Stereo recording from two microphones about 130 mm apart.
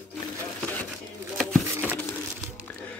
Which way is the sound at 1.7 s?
15° right (ahead or behind).